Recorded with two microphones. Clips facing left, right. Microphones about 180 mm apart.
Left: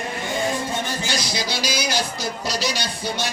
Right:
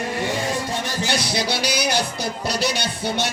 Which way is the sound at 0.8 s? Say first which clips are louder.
Right 2 dB; 65° right (ahead or behind).